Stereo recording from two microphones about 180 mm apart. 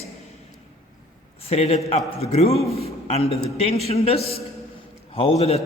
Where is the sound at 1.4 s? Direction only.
35° left (ahead or behind).